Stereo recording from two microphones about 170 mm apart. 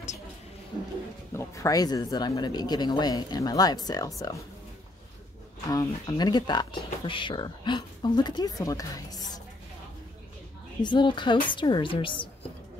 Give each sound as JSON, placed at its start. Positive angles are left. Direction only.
{"t": 1.3, "sound": "speech", "side_deg": 15}
{"t": 5.7, "sound": "speech", "side_deg": 20}
{"t": 10.8, "sound": "speech", "side_deg": 25}